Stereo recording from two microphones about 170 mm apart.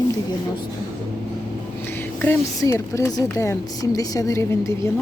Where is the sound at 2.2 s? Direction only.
15° left (ahead or behind).